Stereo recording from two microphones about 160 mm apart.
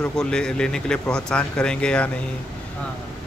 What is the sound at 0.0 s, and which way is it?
Speech, 5° left (ahead or behind).